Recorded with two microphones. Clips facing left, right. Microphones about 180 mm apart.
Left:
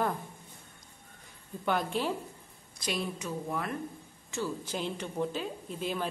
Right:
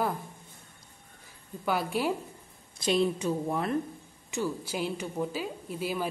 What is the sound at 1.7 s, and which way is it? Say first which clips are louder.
Speech: right 2 dB; 10° right (ahead or behind).